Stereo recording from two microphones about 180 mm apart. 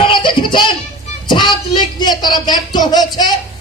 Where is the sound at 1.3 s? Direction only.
25° left (ahead or behind).